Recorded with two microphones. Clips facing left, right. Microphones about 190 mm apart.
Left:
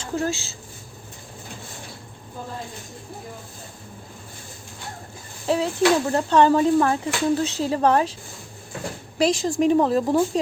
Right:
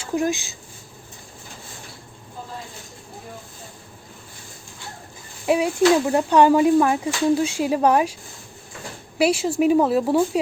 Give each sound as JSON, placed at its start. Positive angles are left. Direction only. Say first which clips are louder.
{"t": 0.0, "sound": "speech", "louder": "right 3 dB", "side_deg": -15}
{"t": 5.5, "sound": "speech", "louder": "right 2 dB", "side_deg": -10}
{"t": 9.1, "sound": "speech", "louder": "right 1 dB", "side_deg": -10}